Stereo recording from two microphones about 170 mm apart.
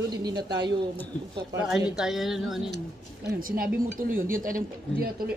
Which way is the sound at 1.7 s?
5° right (ahead or behind).